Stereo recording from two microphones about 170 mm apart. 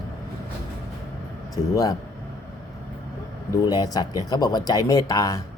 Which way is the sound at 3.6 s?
20° left (ahead or behind).